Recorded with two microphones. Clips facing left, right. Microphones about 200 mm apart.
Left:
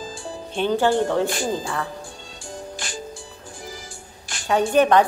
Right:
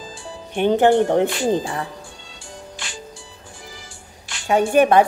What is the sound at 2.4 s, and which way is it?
Music, 45° left (ahead or behind).